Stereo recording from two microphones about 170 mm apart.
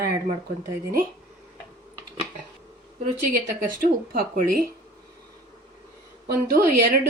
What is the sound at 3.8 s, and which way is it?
Speech, 55° right (ahead or behind).